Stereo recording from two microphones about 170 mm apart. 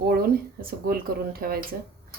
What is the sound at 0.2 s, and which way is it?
A woman's voice, 60° right (ahead or behind).